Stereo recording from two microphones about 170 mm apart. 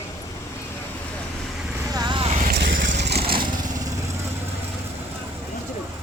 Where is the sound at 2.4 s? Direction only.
65° right (ahead or behind).